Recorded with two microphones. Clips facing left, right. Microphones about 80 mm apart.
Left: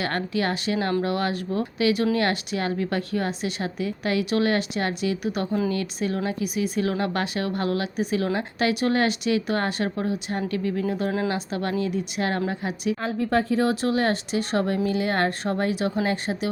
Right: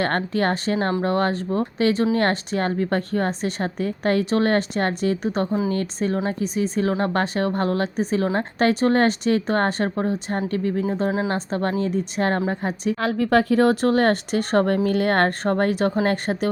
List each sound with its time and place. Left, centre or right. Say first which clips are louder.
0.0 s speech: right 4 dB; right
10.8 s speech: right 2 dB; right
11.3 s speech: right 3 dB; right
13.0 s speech: right 6 dB; right